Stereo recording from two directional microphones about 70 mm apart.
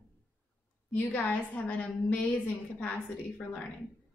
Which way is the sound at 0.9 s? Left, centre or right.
Left.